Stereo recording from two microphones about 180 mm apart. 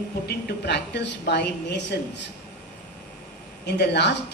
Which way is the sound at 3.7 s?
70° left (ahead or behind).